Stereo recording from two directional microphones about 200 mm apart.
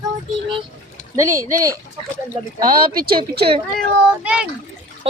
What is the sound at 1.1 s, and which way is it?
Speech, 15° right (ahead or behind).